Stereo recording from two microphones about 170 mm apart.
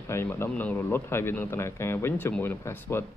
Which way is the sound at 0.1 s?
15° left (ahead or behind).